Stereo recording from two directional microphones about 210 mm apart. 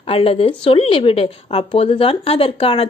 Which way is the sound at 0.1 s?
25° left (ahead or behind).